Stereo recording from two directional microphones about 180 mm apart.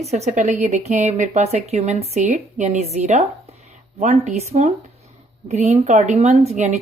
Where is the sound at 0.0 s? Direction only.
35° right (ahead or behind).